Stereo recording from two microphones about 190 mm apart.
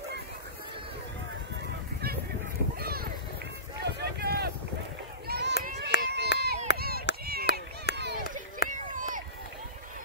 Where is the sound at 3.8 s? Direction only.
55° right (ahead or behind).